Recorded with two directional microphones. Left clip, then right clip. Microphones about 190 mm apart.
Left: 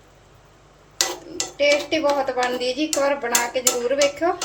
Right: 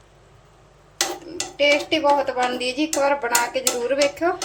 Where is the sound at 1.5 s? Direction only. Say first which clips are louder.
Even; 15° right (ahead or behind).